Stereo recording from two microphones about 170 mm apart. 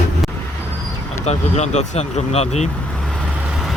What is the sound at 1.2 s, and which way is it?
Speech, 40° left (ahead or behind).